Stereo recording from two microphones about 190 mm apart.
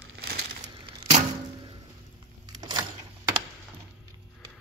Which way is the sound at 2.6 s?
20° right (ahead or behind).